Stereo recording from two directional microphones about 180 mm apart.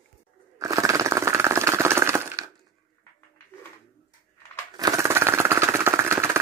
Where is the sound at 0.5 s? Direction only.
15° right (ahead or behind).